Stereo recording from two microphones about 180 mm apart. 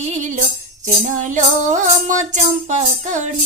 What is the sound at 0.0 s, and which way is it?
Music, 40° right (ahead or behind).